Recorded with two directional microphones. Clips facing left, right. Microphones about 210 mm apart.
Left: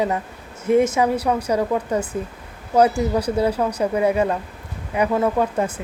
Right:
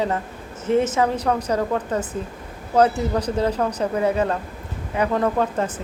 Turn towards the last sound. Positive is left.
turn(degrees=10)  # may be behind; listen again after turning